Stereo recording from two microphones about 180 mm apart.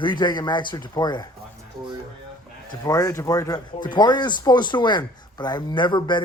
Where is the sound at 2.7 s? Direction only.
20° left (ahead or behind).